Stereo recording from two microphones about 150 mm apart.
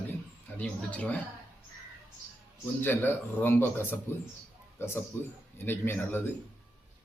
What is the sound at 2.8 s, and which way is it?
Speech, 15° left (ahead or behind).